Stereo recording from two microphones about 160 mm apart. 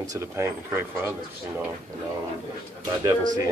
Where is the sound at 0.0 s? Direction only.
20° right (ahead or behind).